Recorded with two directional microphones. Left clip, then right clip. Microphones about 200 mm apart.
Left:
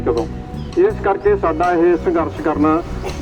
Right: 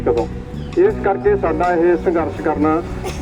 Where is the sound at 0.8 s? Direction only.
45° left (ahead or behind).